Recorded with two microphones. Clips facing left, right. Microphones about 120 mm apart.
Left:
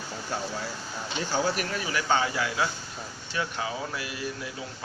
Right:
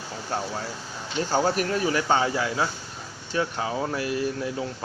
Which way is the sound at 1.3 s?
40° right (ahead or behind).